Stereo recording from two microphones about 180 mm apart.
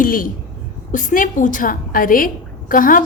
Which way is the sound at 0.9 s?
45° left (ahead or behind).